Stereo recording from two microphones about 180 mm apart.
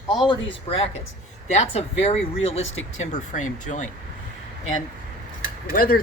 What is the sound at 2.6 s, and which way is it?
Speech, 90° left.